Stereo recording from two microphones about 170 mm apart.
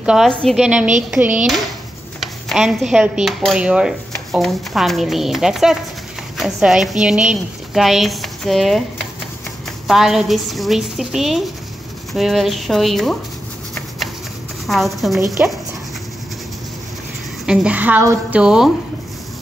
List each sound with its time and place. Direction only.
0.0 s dishes: 5° right (ahead or behind)
9.8 s dishes: centre (ahead or behind)
14.7 s dishes: centre (ahead or behind)
17.5 s a woman's voice: 5° right (ahead or behind)